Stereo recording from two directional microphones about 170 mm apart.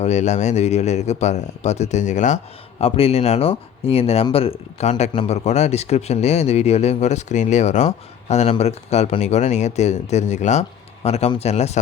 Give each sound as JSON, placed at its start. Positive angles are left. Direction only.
{"t": 0.0, "sound": "a man's voice", "side_deg": 45}